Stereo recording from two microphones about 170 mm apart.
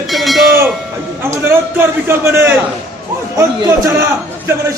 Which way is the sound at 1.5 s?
15° right (ahead or behind).